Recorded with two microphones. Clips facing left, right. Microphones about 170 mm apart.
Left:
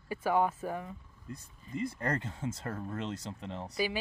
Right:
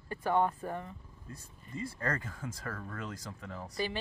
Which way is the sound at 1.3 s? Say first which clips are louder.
Left 4 dB; 20° left (ahead or behind).